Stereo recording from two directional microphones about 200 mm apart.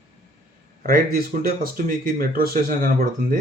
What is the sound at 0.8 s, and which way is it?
Speech, 45° right (ahead or behind).